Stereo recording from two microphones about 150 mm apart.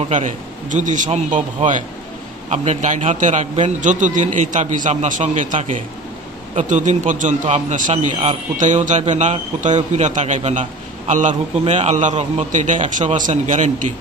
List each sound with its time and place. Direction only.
0.1 s a man's voice: 55° right (ahead or behind)